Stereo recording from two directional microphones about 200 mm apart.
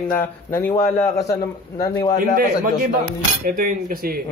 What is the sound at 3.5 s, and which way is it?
Speech, 45° right (ahead or behind).